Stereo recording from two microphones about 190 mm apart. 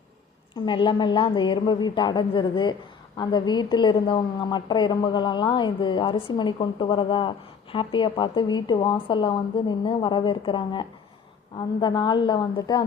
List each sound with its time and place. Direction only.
0.5 s a woman's voice: 25° left (ahead or behind)